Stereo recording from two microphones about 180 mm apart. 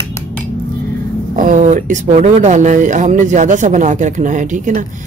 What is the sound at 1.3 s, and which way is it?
Speech, 45° right (ahead or behind).